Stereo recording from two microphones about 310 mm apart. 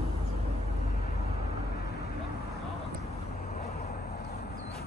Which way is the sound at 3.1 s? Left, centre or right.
Left.